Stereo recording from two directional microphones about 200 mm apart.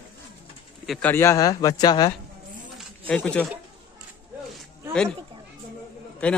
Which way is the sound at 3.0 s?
5° left (ahead or behind).